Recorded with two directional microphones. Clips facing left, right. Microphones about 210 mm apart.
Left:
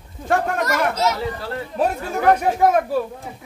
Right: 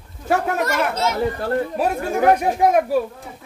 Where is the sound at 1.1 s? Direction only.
50° right (ahead or behind).